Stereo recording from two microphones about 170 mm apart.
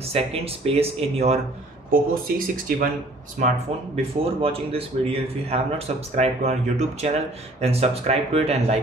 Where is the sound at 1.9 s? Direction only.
55° right (ahead or behind).